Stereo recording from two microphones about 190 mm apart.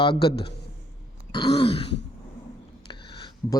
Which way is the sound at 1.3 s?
20° left (ahead or behind).